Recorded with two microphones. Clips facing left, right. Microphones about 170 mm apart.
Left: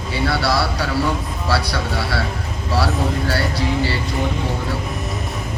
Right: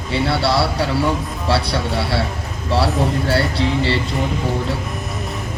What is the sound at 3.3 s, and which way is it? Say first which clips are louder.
Speech: right 3 dB; 25° right (ahead or behind).